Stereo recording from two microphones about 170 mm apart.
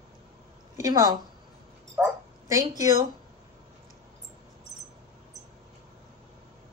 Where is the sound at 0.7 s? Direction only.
20° right (ahead or behind).